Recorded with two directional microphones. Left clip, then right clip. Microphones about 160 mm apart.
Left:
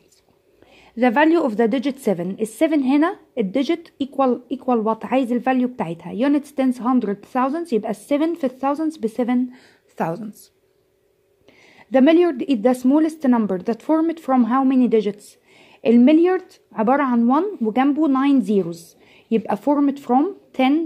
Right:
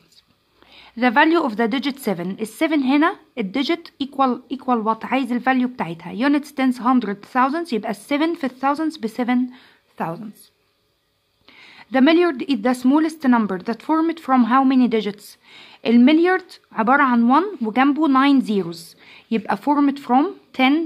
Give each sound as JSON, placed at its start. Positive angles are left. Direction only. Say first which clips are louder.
{"t": 0.9, "sound": "a woman's voice", "louder": "even", "side_deg": 10}
{"t": 9.9, "sound": "speech", "louder": "left 3 dB", "side_deg": 25}
{"t": 11.6, "sound": "a woman's voice", "louder": "left 1 dB", "side_deg": 10}